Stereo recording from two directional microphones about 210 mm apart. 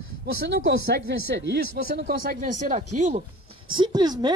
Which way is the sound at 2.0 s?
40° right (ahead or behind).